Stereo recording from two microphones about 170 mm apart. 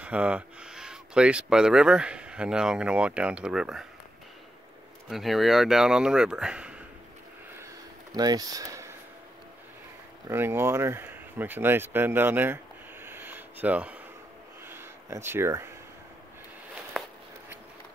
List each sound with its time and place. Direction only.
0.0 s speech: 5° right (ahead or behind)
5.1 s speech: centre (ahead or behind)
8.1 s speech: 20° right (ahead or behind)
10.2 s speech: 15° right (ahead or behind)
13.0 s a sound: 10° right (ahead or behind)